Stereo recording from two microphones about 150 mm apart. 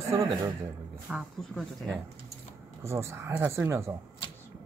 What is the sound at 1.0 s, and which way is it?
Speech, centre (ahead or behind).